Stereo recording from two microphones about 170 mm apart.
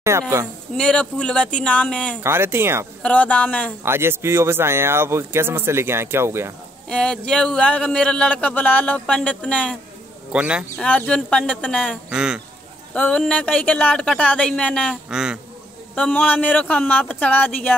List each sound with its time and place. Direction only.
0.1 s speech: 15° right (ahead or behind)
0.7 s speech: 5° left (ahead or behind)
2.2 s speech: 15° right (ahead or behind)
3.0 s speech: 10° left (ahead or behind)
3.8 s speech: 15° right (ahead or behind)
6.9 s speech: 5° left (ahead or behind)
10.3 s speech: 5° right (ahead or behind)
10.8 s speech: 5° left (ahead or behind)
12.1 s speech: 5° right (ahead or behind)
12.9 s speech: 5° left (ahead or behind)
15.0 s speech: 5° right (ahead or behind)
15.9 s speech: 10° left (ahead or behind)